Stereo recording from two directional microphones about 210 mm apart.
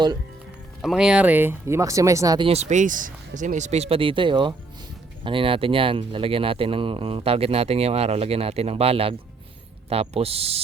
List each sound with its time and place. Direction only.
0.8 s speech: centre (ahead or behind); by 10.6 s 30° right (ahead or behind)